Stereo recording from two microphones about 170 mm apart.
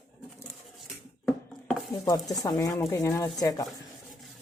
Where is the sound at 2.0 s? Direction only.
20° left (ahead or behind).